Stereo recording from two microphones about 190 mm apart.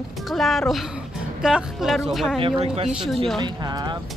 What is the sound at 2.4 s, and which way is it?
Speech, 30° right (ahead or behind).